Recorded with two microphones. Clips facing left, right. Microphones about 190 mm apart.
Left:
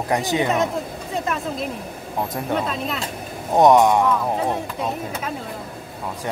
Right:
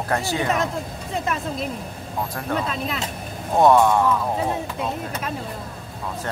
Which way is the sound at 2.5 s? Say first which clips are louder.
Left 1 dB; centre (ahead or behind).